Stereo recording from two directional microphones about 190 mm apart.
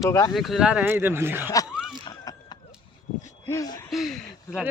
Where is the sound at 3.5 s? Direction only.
20° left (ahead or behind).